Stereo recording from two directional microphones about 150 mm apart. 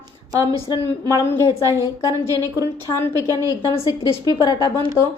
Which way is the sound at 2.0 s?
20° left (ahead or behind).